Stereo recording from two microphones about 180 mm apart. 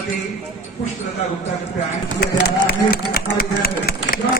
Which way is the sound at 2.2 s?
60° left (ahead or behind).